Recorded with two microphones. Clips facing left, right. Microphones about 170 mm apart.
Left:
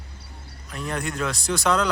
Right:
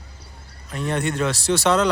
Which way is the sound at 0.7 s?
Centre (ahead or behind).